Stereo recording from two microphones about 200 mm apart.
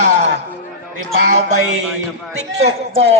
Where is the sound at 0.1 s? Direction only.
60° right (ahead or behind).